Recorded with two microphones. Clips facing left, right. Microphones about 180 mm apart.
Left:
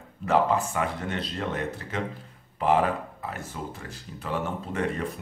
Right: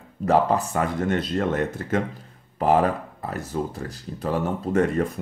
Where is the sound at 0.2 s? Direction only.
35° right (ahead or behind).